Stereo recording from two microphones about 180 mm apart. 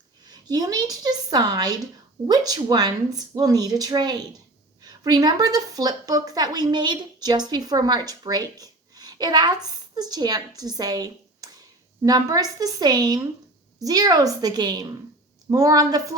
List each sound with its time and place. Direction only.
0.3 s a woman's voice: 20° right (ahead or behind)